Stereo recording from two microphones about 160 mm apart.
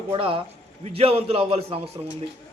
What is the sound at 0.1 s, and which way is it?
A man's voice, 35° right (ahead or behind).